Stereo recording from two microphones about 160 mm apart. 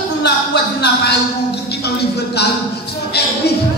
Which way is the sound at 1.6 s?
90° left.